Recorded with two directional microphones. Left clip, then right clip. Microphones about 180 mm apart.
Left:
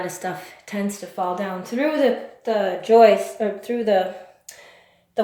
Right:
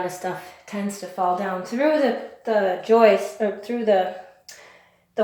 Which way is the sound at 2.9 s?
30° left (ahead or behind).